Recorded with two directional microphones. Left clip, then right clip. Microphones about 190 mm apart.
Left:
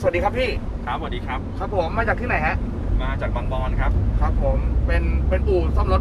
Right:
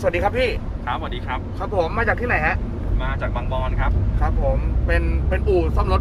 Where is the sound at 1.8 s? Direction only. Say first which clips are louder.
Right 2 dB; 45° right (ahead or behind).